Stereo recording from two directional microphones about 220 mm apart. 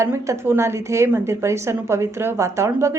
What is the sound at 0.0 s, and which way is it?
A woman's voice, 10° right (ahead or behind).